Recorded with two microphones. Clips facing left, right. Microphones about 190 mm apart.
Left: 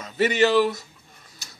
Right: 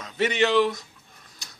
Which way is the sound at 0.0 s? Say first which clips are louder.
Left 3 dB; 5° left (ahead or behind).